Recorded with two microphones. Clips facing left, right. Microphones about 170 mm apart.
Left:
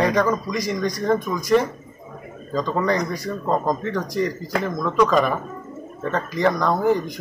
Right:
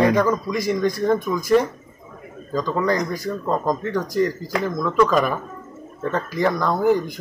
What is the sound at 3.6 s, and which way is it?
Speech, centre (ahead or behind).